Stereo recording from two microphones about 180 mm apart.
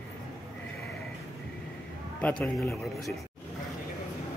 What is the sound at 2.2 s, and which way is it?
Speech, 5° left (ahead or behind).